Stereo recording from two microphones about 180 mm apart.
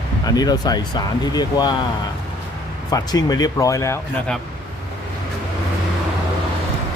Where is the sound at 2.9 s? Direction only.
20° left (ahead or behind).